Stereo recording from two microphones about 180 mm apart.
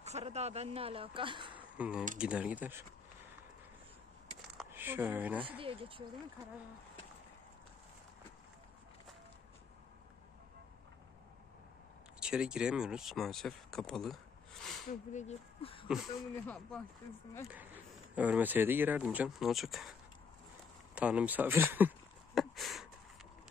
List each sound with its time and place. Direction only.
0.0 s speech: 35° right (ahead or behind)
1.8 s speech: 5° right (ahead or behind)
4.6 s speech: 10° right (ahead or behind)
5.4 s speech: 30° right (ahead or behind)
12.2 s speech: 5° right (ahead or behind)
14.9 s speech: 40° left (ahead or behind)
16.4 s speech: 5° left (ahead or behind)
18.1 s speech: 10° right (ahead or behind)
20.9 s speech: 5° right (ahead or behind)
22.3 s a sound: centre (ahead or behind)